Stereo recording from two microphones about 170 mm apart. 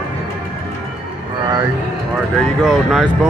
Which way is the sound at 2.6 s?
Centre (ahead or behind).